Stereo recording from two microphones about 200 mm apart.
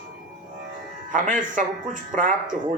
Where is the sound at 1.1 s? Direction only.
40° right (ahead or behind).